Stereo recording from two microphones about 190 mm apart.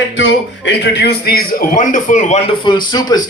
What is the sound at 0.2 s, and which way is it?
A man's voice, 75° left (ahead or behind).